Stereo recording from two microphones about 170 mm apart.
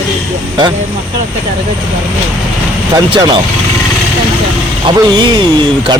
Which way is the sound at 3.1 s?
25° right (ahead or behind).